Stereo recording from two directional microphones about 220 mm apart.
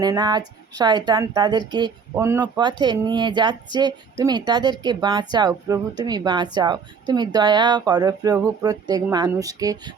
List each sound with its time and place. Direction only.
0.0 s a woman's voice: 20° right (ahead or behind)